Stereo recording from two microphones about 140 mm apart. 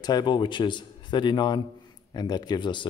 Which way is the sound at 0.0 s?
30° left (ahead or behind).